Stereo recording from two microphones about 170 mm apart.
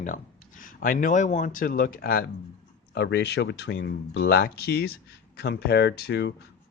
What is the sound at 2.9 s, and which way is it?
Speech, 85° left.